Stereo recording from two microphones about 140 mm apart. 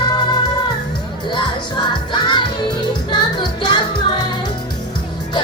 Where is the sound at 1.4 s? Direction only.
35° left (ahead or behind).